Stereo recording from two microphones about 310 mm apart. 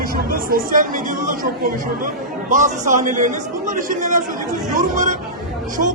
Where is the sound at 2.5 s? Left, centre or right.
Right.